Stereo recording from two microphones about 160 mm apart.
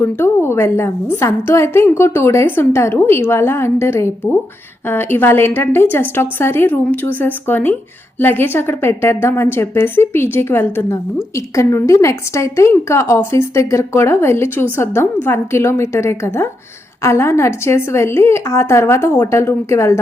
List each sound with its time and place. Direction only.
0.0 s a woman's voice: 15° left (ahead or behind)